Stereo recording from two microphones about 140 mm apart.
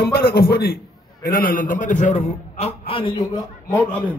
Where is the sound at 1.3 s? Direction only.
75° left (ahead or behind); by 3.7 s 30° left (ahead or behind).